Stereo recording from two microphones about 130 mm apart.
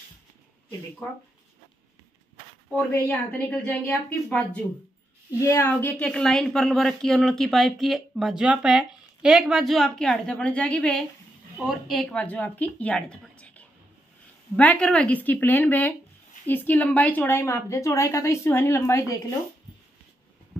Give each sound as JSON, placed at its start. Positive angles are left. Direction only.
{"t": 2.7, "sound": "speech", "side_deg": 10}
{"t": 5.4, "sound": "speech", "side_deg": 20}
{"t": 11.5, "sound": "a woman's voice", "side_deg": -5}